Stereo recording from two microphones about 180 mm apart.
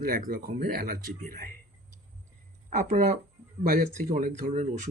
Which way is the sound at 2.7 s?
40° right (ahead or behind).